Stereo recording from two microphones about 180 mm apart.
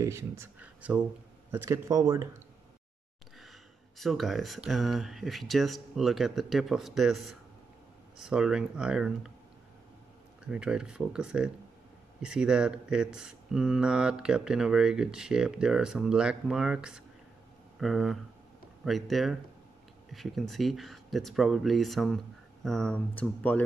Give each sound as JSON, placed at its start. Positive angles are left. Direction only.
{"t": 0.0, "sound": "speech", "side_deg": -15}
{"t": 4.0, "sound": "speech", "side_deg": 0}
{"t": 10.5, "sound": "speech", "side_deg": -5}